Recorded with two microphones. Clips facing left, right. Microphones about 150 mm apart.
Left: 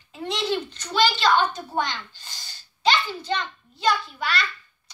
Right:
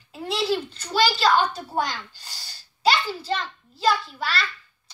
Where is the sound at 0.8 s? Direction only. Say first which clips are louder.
Even; 10° right (ahead or behind).